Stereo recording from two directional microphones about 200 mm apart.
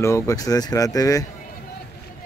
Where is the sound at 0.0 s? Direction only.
15° left (ahead or behind).